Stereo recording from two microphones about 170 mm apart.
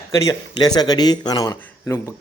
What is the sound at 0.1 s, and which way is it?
Speech, 20° left (ahead or behind).